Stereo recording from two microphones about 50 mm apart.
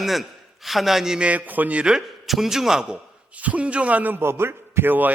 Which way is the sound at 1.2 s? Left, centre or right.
Right.